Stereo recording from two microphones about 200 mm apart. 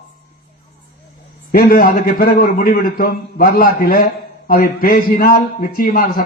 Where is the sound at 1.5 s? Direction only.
45° left (ahead or behind).